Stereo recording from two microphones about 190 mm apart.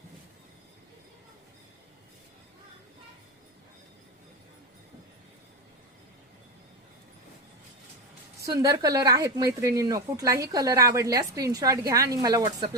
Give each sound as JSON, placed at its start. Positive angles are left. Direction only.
{"t": 8.4, "sound": "speech", "side_deg": -20}